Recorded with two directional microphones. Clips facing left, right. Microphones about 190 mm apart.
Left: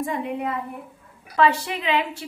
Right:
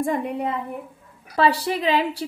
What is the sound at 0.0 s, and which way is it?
Speech, 45° right (ahead or behind).